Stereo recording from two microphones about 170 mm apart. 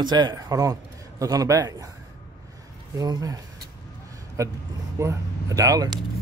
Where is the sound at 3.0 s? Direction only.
20° right (ahead or behind).